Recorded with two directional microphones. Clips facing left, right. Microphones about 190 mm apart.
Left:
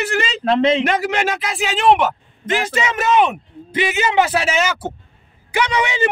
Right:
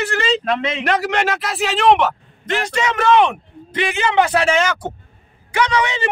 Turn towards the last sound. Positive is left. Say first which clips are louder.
# right 1 dB
turn(degrees=10)  # may be behind; listen again after turning